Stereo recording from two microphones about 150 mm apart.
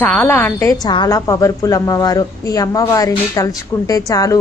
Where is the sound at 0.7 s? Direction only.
25° left (ahead or behind).